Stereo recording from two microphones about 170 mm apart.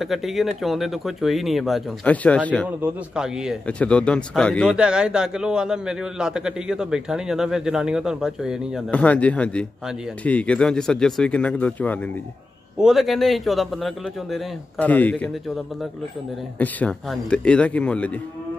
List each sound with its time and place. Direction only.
0.0 s a man's voice: centre (ahead or behind)
3.6 s speech: 5° left (ahead or behind)
4.7 s a man's voice: 5° right (ahead or behind)
12.7 s a man's voice: centre (ahead or behind)